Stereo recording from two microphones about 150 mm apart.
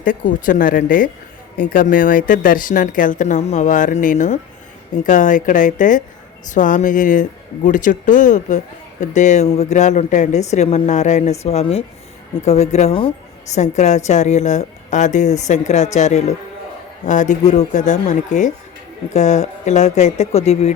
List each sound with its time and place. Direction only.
0.0 s speech: 65° left (ahead or behind); by 13.6 s 35° left (ahead or behind)
13.6 s speech: 50° left (ahead or behind)